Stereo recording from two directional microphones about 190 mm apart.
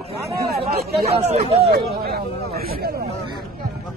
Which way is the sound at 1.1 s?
35° right (ahead or behind).